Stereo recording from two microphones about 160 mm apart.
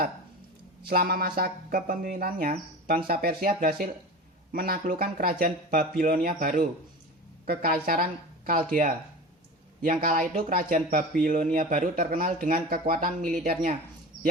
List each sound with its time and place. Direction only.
0.9 s a man's voice: 70° right (ahead or behind)
9.8 s a man's voice: 60° right (ahead or behind)